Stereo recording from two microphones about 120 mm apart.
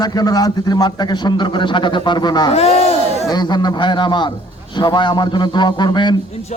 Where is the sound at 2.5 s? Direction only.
60° left (ahead or behind).